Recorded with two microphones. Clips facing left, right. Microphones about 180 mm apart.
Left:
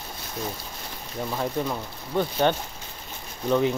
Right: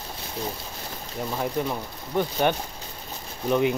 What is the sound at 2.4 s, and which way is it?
Speech, 10° right (ahead or behind).